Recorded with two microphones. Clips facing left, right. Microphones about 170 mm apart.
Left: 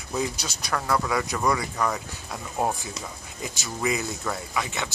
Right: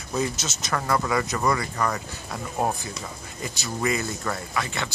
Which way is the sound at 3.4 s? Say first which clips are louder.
Right 1 dB; centre (ahead or behind).